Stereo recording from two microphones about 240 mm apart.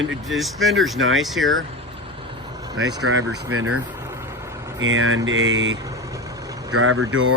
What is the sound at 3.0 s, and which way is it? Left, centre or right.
Speech, right.